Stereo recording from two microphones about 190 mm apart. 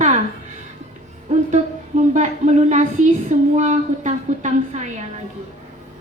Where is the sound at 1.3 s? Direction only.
40° right (ahead or behind).